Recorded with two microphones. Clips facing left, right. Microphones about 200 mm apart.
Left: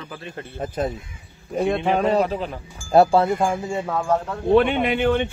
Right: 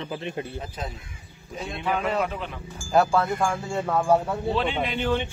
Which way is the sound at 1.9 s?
35° left (ahead or behind).